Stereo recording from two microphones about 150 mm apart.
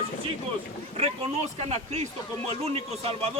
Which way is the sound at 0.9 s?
45° right (ahead or behind).